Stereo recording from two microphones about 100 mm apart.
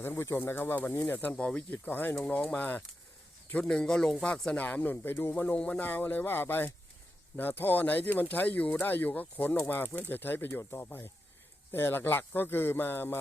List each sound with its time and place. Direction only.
0.0 s speech: 25° left (ahead or behind)